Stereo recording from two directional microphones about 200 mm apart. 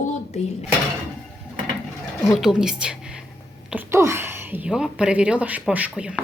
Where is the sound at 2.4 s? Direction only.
5° right (ahead or behind).